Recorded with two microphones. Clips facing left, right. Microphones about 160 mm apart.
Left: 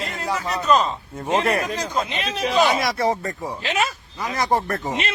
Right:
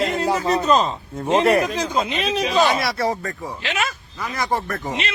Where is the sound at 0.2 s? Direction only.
30° right (ahead or behind).